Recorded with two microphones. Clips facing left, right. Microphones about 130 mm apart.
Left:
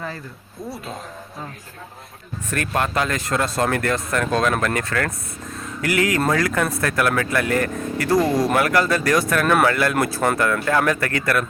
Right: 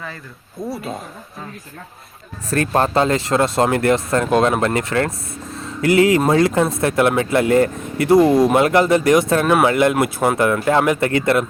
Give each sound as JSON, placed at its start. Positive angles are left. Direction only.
{"t": 0.6, "sound": "speech", "side_deg": -25}
{"t": 2.5, "sound": "speech", "side_deg": -35}